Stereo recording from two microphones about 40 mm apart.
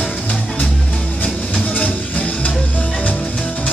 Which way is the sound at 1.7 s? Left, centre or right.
Left.